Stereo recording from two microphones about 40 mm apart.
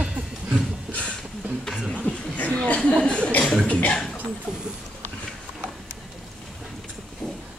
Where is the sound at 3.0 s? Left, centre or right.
Left.